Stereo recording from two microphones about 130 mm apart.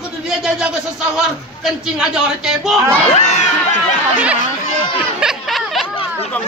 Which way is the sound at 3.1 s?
65° left (ahead or behind).